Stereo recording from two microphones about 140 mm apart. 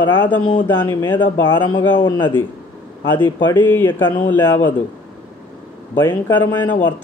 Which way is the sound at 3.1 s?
15° left (ahead or behind).